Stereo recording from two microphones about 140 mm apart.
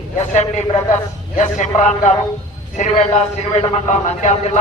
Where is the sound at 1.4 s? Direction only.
60° left (ahead or behind).